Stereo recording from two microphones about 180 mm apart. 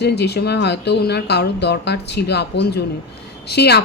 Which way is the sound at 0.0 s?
65° left (ahead or behind).